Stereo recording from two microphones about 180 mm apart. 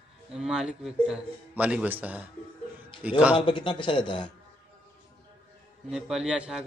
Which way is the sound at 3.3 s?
25° left (ahead or behind).